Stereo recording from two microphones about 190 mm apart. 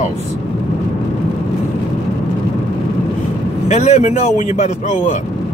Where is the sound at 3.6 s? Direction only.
35° left (ahead or behind).